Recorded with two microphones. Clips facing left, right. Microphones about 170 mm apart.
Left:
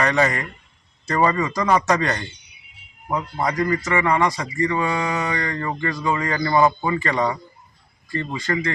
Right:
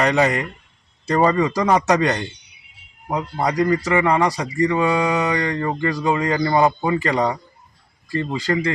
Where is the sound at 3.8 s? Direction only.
30° right (ahead or behind).